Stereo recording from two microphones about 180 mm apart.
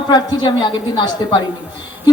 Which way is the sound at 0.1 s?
25° left (ahead or behind).